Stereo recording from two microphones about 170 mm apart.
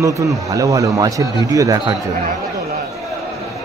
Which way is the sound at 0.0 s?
20° right (ahead or behind).